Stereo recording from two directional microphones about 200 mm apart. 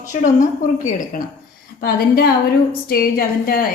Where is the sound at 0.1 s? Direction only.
40° left (ahead or behind).